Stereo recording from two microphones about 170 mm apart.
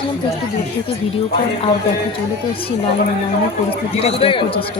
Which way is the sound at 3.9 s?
35° left (ahead or behind).